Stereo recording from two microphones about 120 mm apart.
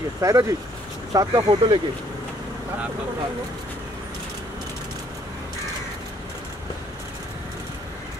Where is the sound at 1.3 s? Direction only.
45° right (ahead or behind).